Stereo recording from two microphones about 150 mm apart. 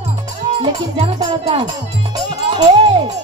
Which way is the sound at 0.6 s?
40° right (ahead or behind).